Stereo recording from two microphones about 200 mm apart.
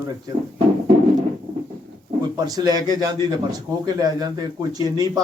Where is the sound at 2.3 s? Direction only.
20° right (ahead or behind).